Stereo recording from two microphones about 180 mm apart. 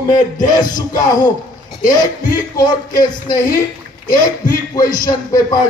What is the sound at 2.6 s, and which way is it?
Speech, 25° left (ahead or behind).